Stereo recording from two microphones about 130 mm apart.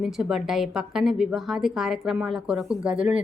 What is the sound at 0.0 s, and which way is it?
A woman's voice, 5° right (ahead or behind).